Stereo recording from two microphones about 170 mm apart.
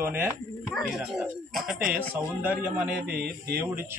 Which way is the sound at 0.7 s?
Centre (ahead or behind).